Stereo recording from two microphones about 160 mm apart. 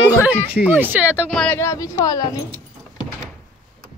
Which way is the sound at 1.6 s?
20° left (ahead or behind).